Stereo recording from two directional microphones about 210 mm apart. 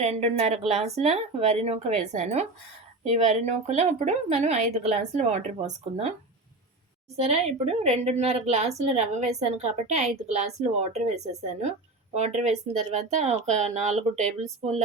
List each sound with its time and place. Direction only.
0.0 s a woman's voice: 30° right (ahead or behind)
7.2 s a woman's voice: 30° right (ahead or behind)